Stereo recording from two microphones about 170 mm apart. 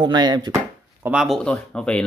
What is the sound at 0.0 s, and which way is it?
Chopping, 25° right (ahead or behind).